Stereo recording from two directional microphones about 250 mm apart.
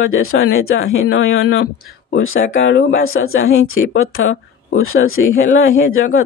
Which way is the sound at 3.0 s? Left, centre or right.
Left.